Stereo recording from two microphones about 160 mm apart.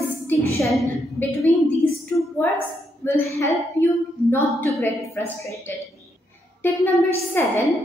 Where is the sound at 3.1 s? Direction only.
20° left (ahead or behind).